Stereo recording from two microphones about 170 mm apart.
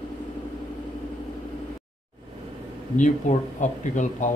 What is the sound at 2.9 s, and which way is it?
Speech, 45° left (ahead or behind).